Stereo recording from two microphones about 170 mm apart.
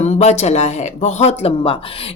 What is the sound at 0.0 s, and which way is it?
A woman's voice, 40° left (ahead or behind).